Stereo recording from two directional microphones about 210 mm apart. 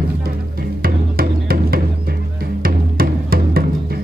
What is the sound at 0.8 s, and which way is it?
Music, 45° right (ahead or behind).